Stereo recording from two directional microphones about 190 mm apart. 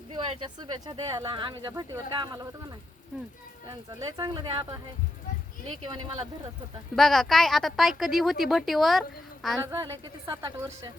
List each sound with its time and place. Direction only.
0.1 s speech: 25° right (ahead or behind)
4.2 s speech: 25° right (ahead or behind)
5.8 s speech: 25° right (ahead or behind)
6.9 s speech: centre (ahead or behind)
9.6 s speech: 20° right (ahead or behind)